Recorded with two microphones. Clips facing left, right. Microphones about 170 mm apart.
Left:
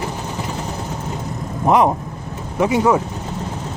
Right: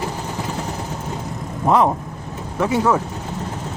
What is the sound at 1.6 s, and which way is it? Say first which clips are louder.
Speech: left 1 dB; 15° left (ahead or behind).